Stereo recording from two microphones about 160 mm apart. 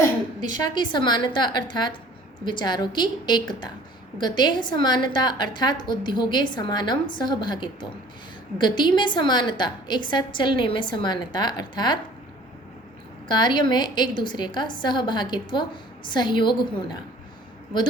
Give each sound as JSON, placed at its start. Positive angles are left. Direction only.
{"t": 0.5, "sound": "a woman's voice", "side_deg": 25}
{"t": 13.2, "sound": "a woman's voice", "side_deg": 25}